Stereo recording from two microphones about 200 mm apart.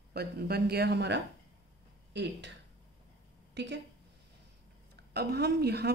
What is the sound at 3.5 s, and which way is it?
Speech, 60° right (ahead or behind).